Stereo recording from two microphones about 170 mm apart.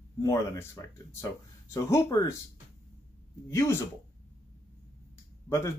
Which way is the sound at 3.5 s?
20° left (ahead or behind).